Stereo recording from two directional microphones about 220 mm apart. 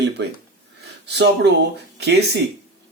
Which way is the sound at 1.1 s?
50° right (ahead or behind).